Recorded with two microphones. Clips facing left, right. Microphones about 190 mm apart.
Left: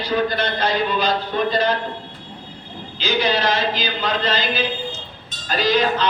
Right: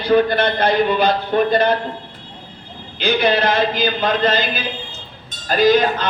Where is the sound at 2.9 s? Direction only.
55° right (ahead or behind).